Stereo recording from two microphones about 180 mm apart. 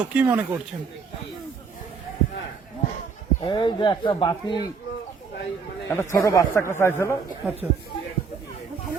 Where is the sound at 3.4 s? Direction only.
25° left (ahead or behind).